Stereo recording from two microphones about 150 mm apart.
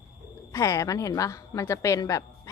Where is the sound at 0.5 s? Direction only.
20° left (ahead or behind).